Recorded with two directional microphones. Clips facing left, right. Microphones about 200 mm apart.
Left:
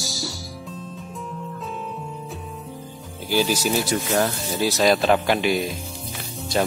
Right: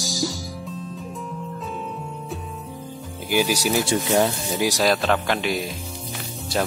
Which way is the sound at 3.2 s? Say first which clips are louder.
Even; 15° right (ahead or behind).